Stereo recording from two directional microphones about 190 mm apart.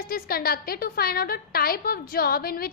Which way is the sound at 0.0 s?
50° left (ahead or behind).